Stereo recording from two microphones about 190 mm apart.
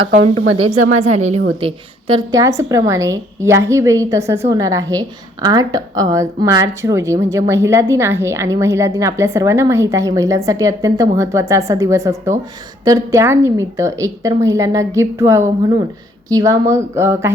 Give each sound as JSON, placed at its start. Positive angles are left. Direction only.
{"t": 0.5, "sound": "speech", "side_deg": -35}
{"t": 1.6, "sound": "a woman's voice", "side_deg": -25}